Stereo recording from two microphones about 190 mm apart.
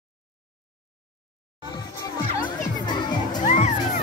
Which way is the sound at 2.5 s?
25° left (ahead or behind).